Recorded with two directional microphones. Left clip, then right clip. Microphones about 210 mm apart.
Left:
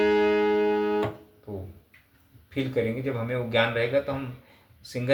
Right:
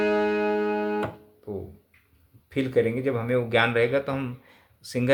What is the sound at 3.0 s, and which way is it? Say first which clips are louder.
Speech: right 4 dB; 55° right (ahead or behind).